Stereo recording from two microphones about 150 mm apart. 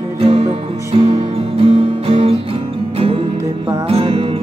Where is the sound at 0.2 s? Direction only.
40° right (ahead or behind).